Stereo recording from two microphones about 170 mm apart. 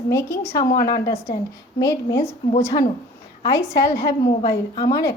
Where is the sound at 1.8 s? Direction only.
20° left (ahead or behind).